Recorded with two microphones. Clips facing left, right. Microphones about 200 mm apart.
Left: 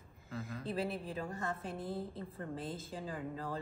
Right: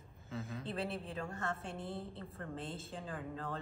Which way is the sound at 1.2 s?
15° left (ahead or behind).